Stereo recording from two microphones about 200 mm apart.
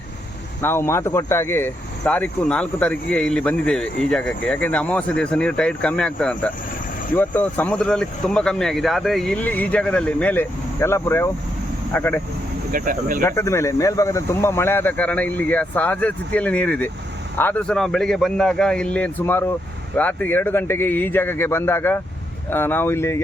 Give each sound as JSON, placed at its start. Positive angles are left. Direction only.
{"t": 0.6, "sound": "speech", "side_deg": 10}
{"t": 12.7, "sound": "speech", "side_deg": -45}
{"t": 13.2, "sound": "speech", "side_deg": 15}